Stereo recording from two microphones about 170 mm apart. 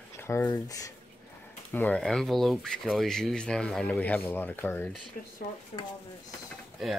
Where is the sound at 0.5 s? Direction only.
20° left (ahead or behind).